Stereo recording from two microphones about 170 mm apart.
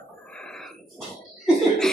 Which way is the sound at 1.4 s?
5° left (ahead or behind).